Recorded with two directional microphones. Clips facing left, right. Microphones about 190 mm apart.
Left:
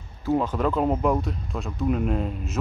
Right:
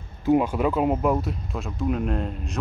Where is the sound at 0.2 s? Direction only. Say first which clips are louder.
Right 3 dB; 15° right (ahead or behind).